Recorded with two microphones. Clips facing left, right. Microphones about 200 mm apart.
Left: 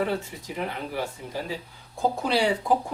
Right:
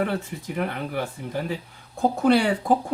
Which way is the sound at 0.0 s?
55° right (ahead or behind).